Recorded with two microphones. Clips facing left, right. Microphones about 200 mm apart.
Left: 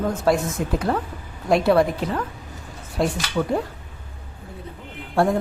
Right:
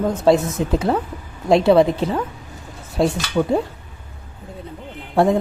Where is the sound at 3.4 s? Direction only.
15° right (ahead or behind).